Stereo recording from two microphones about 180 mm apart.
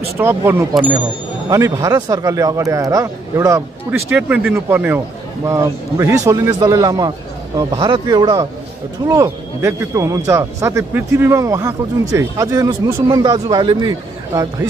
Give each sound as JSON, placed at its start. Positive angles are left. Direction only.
{"t": 0.2, "sound": "a man's voice", "side_deg": -10}